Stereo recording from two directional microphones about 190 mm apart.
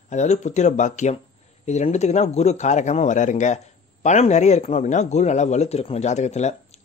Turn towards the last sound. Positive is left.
turn(degrees=35)  # may be behind; listen again after turning